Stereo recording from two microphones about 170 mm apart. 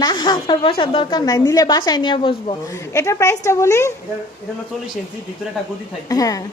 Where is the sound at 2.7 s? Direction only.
20° left (ahead or behind).